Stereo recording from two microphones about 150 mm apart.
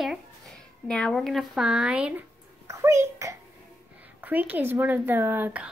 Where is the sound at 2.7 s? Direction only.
20° right (ahead or behind).